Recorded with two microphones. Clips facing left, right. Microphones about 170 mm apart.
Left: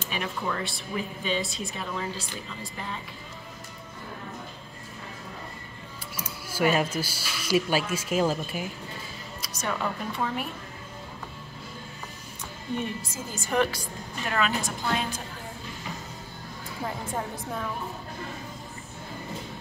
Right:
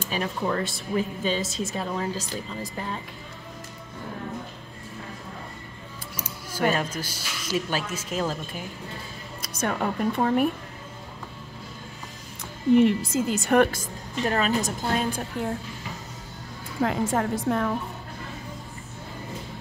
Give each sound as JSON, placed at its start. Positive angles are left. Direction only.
{"t": 0.1, "sound": "a woman's voice", "side_deg": -40}
{"t": 6.5, "sound": "speech", "side_deg": 10}
{"t": 9.4, "sound": "a woman's voice", "side_deg": -55}
{"t": 12.7, "sound": "a woman's voice", "side_deg": -80}
{"t": 16.8, "sound": "a woman's voice", "side_deg": -90}